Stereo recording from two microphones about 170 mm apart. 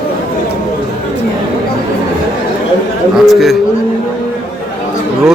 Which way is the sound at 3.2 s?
Centre (ahead or behind).